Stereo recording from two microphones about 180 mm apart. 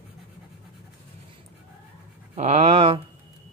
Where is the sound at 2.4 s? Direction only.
40° right (ahead or behind).